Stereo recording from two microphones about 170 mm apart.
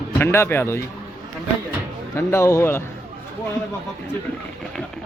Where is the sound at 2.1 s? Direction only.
15° left (ahead or behind).